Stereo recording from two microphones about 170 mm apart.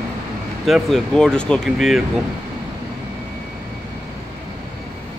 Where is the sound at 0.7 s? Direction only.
Centre (ahead or behind).